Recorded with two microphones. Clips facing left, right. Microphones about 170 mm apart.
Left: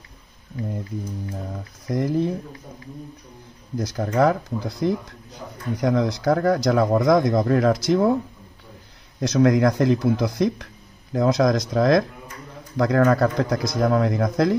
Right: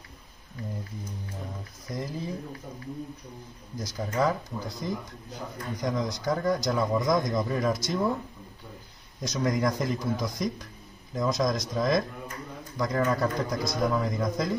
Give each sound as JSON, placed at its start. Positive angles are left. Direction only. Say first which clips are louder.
{"t": 1.9, "sound": "speech", "louder": "left 12 dB", "side_deg": 70}
{"t": 3.7, "sound": "speech", "louder": "left 8 dB", "side_deg": 65}
{"t": 7.2, "sound": "speech", "louder": "left 8 dB", "side_deg": 65}
{"t": 9.2, "sound": "speech", "louder": "left 9 dB", "side_deg": 75}